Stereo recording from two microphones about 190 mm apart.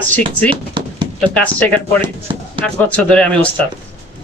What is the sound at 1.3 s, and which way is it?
Speech, 5° left (ahead or behind).